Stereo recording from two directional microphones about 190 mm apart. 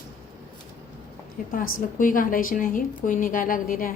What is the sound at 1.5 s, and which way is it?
A woman's voice, 45° left (ahead or behind).